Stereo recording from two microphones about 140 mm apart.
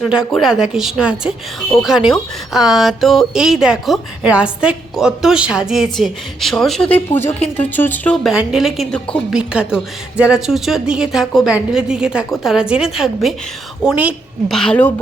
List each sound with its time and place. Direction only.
0.0 s a woman's voice: 5° right (ahead or behind); by 8.1 s 15° left (ahead or behind)
8.1 s a woman's voice: centre (ahead or behind)
9.3 s a woman's voice: 5° right (ahead or behind)
14.4 s a woman's voice: 5° left (ahead or behind)
14.8 s speech: 15° left (ahead or behind)